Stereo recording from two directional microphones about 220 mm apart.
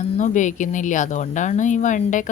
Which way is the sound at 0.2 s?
35° left (ahead or behind).